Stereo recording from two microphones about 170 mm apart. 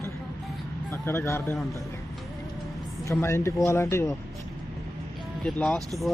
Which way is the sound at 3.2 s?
15° left (ahead or behind).